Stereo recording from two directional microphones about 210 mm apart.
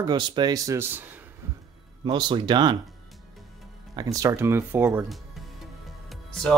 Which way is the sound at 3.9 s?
15° right (ahead or behind).